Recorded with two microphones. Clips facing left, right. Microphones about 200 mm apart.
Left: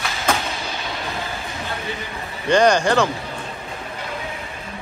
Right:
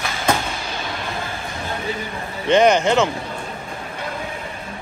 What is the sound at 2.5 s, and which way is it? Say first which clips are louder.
Speech: right 1 dB; 20° right (ahead or behind).